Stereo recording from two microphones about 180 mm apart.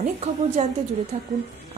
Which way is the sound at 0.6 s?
40° right (ahead or behind).